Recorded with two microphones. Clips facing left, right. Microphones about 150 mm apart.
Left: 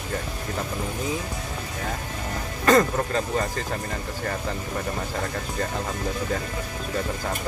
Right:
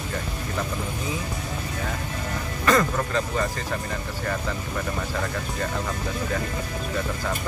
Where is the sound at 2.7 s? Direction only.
35° left (ahead or behind).